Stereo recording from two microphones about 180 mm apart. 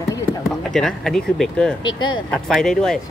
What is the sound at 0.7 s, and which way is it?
Speech, centre (ahead or behind).